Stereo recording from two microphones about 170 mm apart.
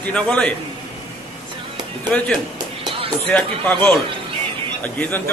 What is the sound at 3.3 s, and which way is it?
A man's voice, 10° left (ahead or behind).